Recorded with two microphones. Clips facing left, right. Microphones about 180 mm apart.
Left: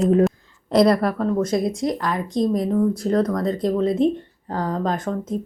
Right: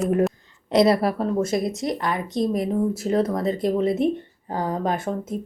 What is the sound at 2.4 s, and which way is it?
Speech, 20° right (ahead or behind).